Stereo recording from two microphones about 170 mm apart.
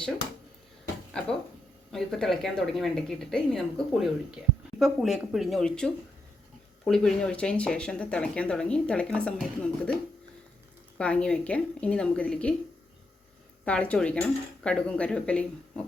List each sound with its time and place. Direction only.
1.2 s speech: 5° left (ahead or behind)
10.9 s speech: 5° left (ahead or behind)
13.7 s speech: 5° left (ahead or behind)